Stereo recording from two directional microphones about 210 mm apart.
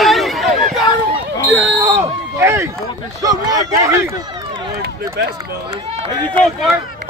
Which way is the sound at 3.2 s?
15° right (ahead or behind).